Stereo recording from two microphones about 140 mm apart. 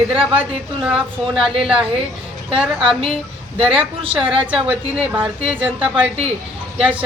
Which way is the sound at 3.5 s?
40° right (ahead or behind).